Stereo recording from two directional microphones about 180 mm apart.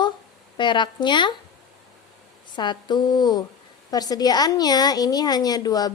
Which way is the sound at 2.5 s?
25° left (ahead or behind).